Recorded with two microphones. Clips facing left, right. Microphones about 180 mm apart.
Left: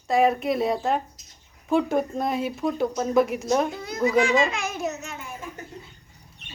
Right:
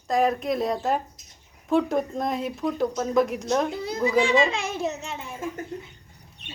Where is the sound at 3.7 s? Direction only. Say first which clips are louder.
Left 1 dB; 30° right (ahead or behind).